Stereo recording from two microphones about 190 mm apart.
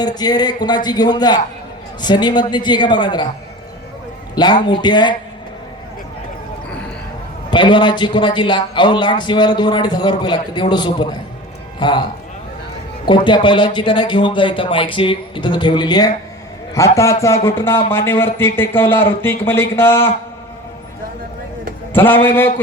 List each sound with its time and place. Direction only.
0.0 s a man's voice: 20° left (ahead or behind)
4.7 s a man's voice: 25° left (ahead or behind)
7.5 s a man's voice: 25° left (ahead or behind)
13.1 s a man's voice: 25° left (ahead or behind)
21.9 s speech: 10° left (ahead or behind)